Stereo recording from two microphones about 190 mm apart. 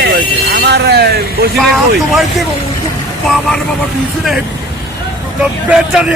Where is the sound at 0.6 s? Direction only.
60° right (ahead or behind).